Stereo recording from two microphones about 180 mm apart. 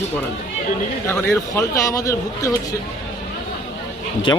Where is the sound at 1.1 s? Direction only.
15° left (ahead or behind).